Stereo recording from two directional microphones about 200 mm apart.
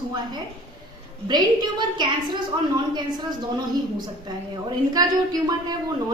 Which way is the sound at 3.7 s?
20° right (ahead or behind).